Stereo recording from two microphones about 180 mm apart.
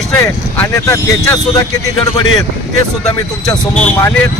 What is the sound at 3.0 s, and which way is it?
Speech, 5° left (ahead or behind).